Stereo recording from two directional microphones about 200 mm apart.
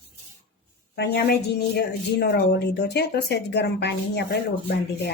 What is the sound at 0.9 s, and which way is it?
A woman's voice, 55° left (ahead or behind).